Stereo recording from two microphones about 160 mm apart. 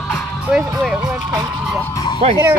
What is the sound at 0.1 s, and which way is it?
Music, 5° right (ahead or behind).